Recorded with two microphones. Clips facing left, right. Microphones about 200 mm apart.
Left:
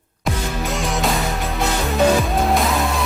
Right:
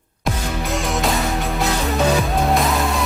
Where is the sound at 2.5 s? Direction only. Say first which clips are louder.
Even; centre (ahead or behind).